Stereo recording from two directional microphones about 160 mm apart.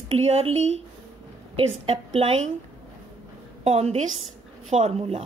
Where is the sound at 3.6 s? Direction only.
40° right (ahead or behind).